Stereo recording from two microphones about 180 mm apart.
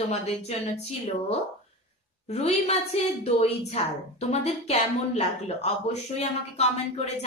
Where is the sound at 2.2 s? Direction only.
35° left (ahead or behind).